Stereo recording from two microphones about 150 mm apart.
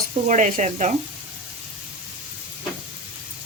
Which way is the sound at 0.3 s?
55° right (ahead or behind).